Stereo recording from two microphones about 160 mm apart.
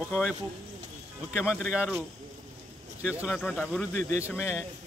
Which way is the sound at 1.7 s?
5° right (ahead or behind).